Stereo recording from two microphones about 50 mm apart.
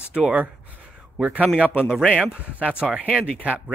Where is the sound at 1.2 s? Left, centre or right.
Right.